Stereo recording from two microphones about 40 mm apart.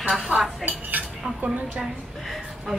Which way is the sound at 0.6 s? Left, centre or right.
Centre.